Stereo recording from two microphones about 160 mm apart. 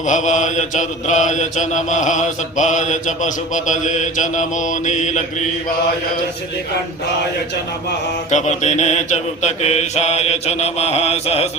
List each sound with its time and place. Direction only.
0.0 s mantra: 50° left (ahead or behind)
8.3 s mantra: 45° left (ahead or behind)